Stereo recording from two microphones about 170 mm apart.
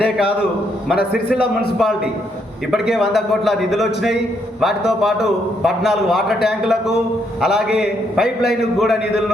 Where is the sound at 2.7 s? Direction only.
5° right (ahead or behind).